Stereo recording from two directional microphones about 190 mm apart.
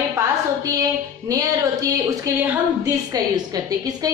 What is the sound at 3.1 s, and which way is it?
Speech, 20° right (ahead or behind).